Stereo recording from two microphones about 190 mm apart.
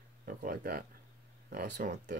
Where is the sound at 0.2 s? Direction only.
45° right (ahead or behind).